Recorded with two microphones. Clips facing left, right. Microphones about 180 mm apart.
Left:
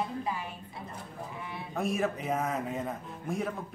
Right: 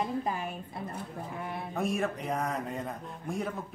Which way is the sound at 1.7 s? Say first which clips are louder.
Left 1 dB; centre (ahead or behind).